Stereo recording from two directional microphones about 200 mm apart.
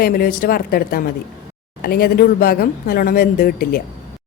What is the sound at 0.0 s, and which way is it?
Speech, 50° left (ahead or behind).